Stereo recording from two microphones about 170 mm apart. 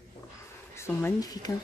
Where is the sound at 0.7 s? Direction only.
15° left (ahead or behind).